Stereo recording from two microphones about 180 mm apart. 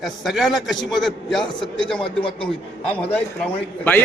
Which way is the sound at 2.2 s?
30° left (ahead or behind).